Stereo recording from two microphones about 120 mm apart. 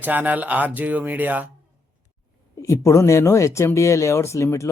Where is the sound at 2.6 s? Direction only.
25° left (ahead or behind).